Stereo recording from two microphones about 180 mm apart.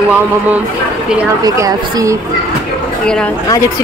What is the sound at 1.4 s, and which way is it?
Speech, 20° right (ahead or behind).